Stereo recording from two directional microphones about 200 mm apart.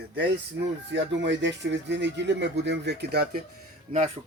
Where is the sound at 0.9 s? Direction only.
60° right (ahead or behind).